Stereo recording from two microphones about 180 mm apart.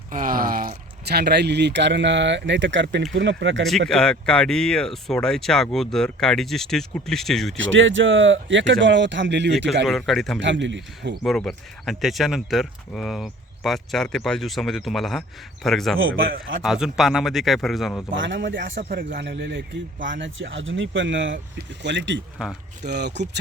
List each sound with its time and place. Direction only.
0.1 s speech: 50° right (ahead or behind); by 3.6 s 90° right
3.7 s speech: centre (ahead or behind)
7.5 s speech: 90° right
9.8 s speech: centre (ahead or behind)
10.4 s a man's voice: 85° right
11.2 s speech: 5° left (ahead or behind)
16.0 s speech: 90° right
16.6 s speech: 5° right (ahead or behind)
18.1 s speech: 90° right
18.8 s speech: 55° right (ahead or behind)
19.0 s speech: 70° right (ahead or behind)
20.1 s a man's voice: 90° right
22.9 s speech: 70° right (ahead or behind)